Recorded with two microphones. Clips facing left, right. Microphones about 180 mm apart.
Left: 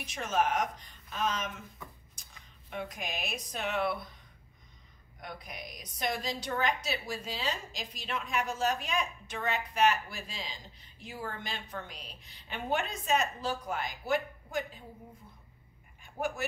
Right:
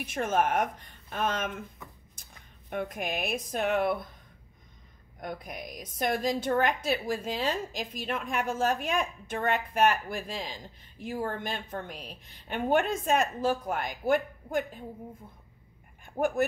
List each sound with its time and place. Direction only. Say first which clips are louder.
0.0 s speech: right 3 dB; 55° right (ahead or behind)
2.7 s a woman's voice: right 6 dB; 55° right (ahead or behind)
5.2 s a woman's voice: right 6 dB; 50° right (ahead or behind)
16.2 s a woman's voice: right 8 dB; 50° right (ahead or behind)